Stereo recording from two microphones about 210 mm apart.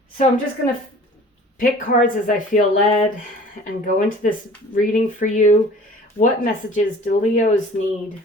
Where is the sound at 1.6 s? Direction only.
40° left (ahead or behind).